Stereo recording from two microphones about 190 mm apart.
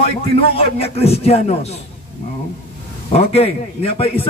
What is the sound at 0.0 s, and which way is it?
Speech, 30° left (ahead or behind).